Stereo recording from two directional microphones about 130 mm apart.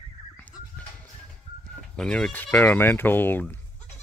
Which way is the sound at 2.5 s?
15° left (ahead or behind).